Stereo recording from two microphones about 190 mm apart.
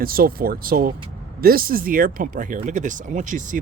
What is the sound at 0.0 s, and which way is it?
Speech, 50° right (ahead or behind).